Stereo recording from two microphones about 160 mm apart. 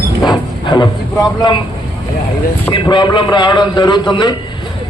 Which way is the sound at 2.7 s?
30° left (ahead or behind).